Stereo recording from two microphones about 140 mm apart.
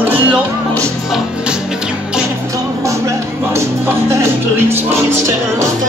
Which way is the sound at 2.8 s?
20° right (ahead or behind).